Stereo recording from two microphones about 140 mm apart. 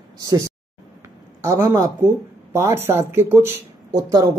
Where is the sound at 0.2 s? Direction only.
25° right (ahead or behind).